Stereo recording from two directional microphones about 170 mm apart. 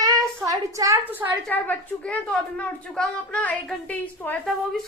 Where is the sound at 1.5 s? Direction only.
10° left (ahead or behind).